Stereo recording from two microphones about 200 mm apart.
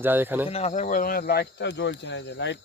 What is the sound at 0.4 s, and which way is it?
Speech, 30° left (ahead or behind).